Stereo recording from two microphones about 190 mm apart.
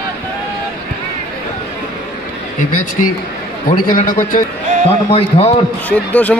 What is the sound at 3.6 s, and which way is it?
Speech, 45° left (ahead or behind).